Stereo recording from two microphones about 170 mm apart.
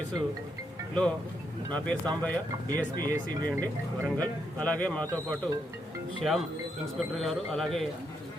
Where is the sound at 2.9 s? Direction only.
55° left (ahead or behind).